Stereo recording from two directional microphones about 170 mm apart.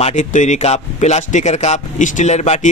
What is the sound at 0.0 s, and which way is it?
A man's voice, 45° left (ahead or behind).